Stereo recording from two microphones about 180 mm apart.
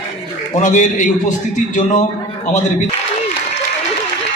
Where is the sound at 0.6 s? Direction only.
45° left (ahead or behind).